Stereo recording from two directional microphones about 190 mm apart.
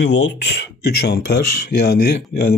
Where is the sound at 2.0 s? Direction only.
60° left (ahead or behind).